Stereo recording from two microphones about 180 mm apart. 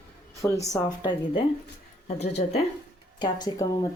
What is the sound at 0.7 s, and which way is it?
A woman's voice, 20° left (ahead or behind).